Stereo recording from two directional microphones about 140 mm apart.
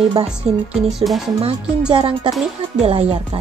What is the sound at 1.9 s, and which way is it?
Speech, 35° right (ahead or behind).